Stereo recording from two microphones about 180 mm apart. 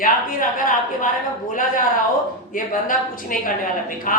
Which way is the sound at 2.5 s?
50° left (ahead or behind).